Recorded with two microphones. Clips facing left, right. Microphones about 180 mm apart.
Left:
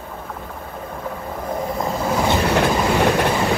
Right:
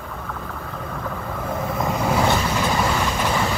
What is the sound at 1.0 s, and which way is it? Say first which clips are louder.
Vehicle: left 1 dB; 20° left (ahead or behind).